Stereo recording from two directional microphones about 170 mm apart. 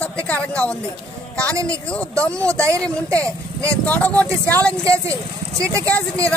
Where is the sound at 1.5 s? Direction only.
20° right (ahead or behind).